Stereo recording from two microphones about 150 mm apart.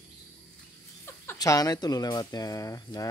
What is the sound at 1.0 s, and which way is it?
Speech, 20° left (ahead or behind).